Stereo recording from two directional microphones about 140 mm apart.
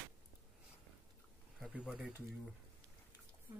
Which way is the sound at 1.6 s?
5° right (ahead or behind).